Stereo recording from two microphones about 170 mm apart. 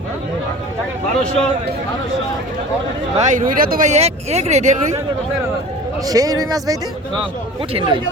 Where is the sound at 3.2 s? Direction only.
45° right (ahead or behind).